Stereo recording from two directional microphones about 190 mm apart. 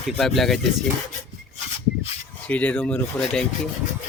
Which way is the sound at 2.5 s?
5° left (ahead or behind).